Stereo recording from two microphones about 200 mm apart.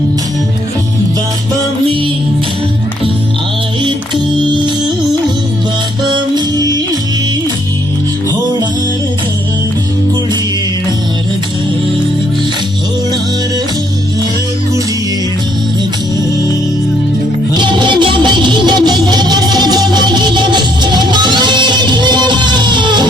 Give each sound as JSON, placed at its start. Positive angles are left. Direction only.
{"t": 6.1, "sound": "music", "side_deg": -20}
{"t": 17.5, "sound": "music", "side_deg": -25}